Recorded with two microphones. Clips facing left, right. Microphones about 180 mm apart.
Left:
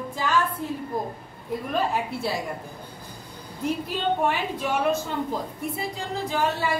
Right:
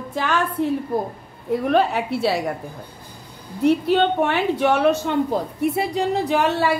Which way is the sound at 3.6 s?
70° right (ahead or behind).